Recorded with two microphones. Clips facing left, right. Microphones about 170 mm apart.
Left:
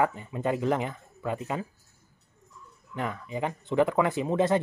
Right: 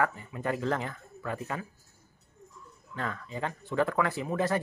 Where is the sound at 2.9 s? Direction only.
15° left (ahead or behind).